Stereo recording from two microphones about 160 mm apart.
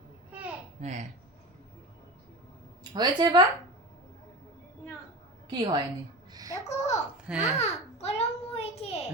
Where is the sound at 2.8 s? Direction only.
25° right (ahead or behind).